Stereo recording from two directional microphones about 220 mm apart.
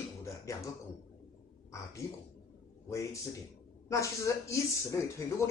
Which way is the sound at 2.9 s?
15° left (ahead or behind).